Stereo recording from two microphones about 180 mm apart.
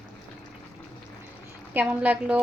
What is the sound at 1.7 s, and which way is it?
Speech, 10° right (ahead or behind).